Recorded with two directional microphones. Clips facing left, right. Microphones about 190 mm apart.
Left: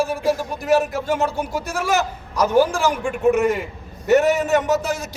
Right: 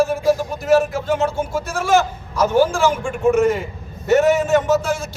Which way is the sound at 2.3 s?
15° left (ahead or behind).